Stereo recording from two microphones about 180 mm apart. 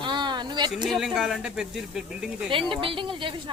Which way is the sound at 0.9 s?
Centre (ahead or behind).